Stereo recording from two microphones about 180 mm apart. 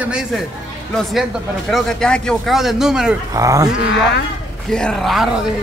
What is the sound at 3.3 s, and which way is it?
Speech, 20° right (ahead or behind).